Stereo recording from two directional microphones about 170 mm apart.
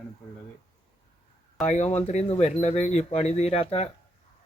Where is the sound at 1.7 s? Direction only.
45° left (ahead or behind).